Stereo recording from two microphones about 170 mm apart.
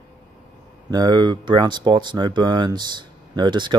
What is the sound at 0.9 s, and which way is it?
Speech, 25° right (ahead or behind).